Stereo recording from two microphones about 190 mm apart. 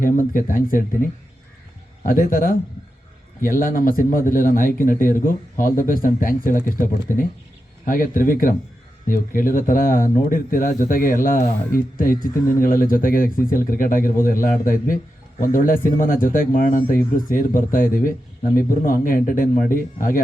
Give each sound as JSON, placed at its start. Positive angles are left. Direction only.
{"t": 0.0, "sound": "speech", "side_deg": 45}
{"t": 2.0, "sound": "speech", "side_deg": 50}